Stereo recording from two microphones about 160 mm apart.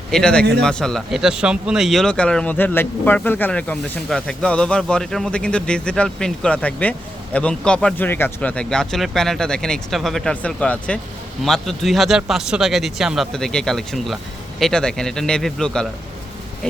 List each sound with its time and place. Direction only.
0.1 s speech: 5° left (ahead or behind)